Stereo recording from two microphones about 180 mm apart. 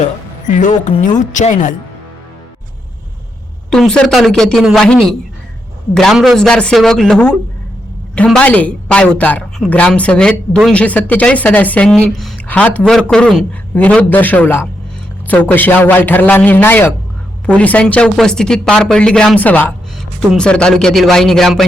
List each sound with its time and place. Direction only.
0.0 s a woman's voice: 45° left (ahead or behind)
3.7 s speech: 5° left (ahead or behind)